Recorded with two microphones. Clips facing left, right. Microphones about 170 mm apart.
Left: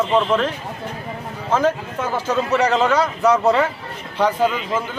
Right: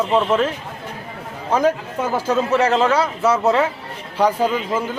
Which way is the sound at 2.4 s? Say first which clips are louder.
Even; centre (ahead or behind).